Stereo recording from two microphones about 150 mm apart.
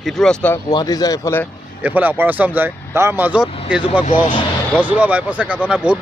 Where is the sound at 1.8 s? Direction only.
10° right (ahead or behind).